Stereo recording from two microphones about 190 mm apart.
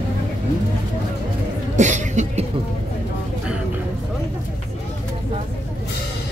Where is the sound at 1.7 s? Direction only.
40° right (ahead or behind).